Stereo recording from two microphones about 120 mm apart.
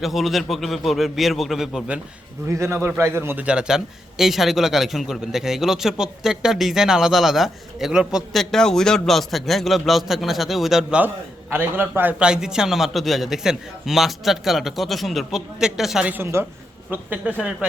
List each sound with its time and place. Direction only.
0.0 s a man's voice: centre (ahead or behind)
2.5 s a man's voice: 25° right (ahead or behind); by 11.0 s 5° right (ahead or behind)
11.5 s a man's voice: 15° right (ahead or behind)
16.1 s a man's voice: 20° right (ahead or behind)